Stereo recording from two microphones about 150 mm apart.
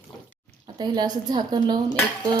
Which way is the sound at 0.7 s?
30° right (ahead or behind).